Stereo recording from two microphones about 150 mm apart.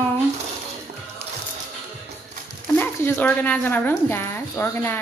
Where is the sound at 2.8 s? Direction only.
15° left (ahead or behind).